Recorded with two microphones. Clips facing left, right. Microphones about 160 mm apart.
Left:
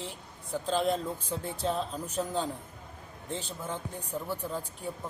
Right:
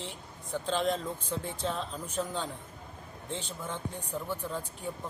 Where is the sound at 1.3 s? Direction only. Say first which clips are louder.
Left 2 dB; 40° left (ahead or behind).